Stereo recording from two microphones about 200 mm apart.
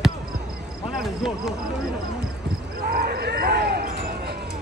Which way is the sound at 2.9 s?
50° right (ahead or behind).